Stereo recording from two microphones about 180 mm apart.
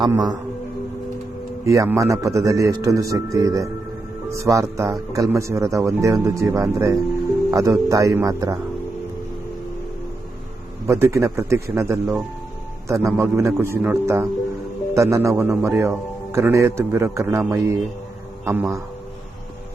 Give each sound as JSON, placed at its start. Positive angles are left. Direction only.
{"t": 0.0, "sound": "a man's voice", "side_deg": -25}
{"t": 1.6, "sound": "a man's voice", "side_deg": -15}
{"t": 10.8, "sound": "a man's voice", "side_deg": -15}